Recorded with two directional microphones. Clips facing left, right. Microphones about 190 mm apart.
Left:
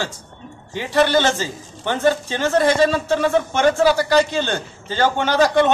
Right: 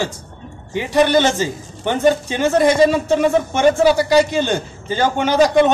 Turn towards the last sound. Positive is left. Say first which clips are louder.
# right 3 dB
turn(degrees=-15)  # may be behind; listen again after turning